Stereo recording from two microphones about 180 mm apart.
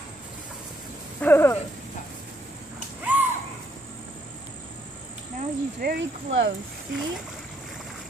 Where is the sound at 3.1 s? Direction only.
10° right (ahead or behind).